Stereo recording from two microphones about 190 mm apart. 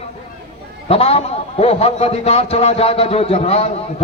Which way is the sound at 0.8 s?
30° left (ahead or behind).